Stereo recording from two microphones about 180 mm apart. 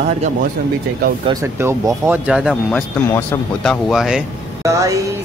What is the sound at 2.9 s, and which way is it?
Speech, 10° left (ahead or behind).